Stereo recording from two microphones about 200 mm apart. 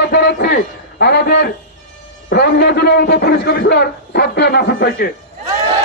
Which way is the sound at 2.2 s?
55° left (ahead or behind).